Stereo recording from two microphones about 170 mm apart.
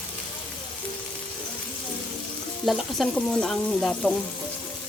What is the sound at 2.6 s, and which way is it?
Frying, centre (ahead or behind).